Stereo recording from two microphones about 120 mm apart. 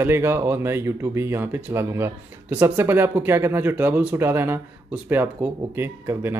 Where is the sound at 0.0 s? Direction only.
20° right (ahead or behind).